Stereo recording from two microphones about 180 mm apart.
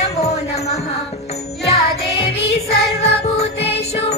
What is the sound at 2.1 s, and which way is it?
Music, 35° left (ahead or behind).